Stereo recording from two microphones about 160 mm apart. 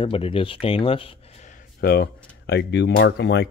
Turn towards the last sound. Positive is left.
turn(degrees=90)